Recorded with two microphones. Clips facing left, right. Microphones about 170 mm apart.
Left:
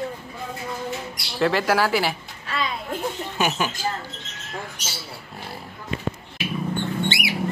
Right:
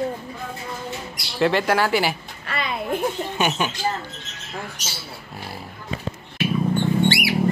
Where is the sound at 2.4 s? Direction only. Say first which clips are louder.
Right 1 dB; 60° right (ahead or behind).